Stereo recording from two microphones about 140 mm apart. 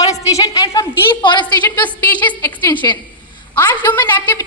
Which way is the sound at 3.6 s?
15° left (ahead or behind).